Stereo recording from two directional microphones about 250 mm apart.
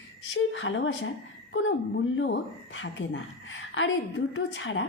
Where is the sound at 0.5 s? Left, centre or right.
Left.